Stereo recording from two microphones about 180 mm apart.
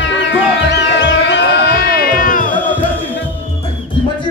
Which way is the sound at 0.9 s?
85° left.